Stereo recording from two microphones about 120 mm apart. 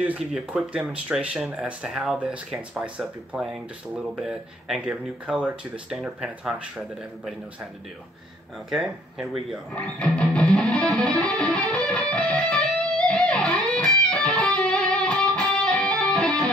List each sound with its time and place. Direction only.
0.0 s speech: 10° right (ahead or behind)
8.6 s speech: 5° right (ahead or behind)
9.9 s music: 5° left (ahead or behind)